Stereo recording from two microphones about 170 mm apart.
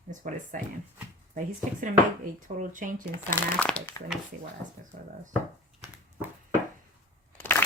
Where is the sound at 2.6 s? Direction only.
50° right (ahead or behind).